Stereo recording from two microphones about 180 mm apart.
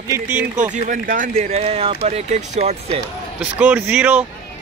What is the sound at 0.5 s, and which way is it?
Speech, 45° right (ahead or behind).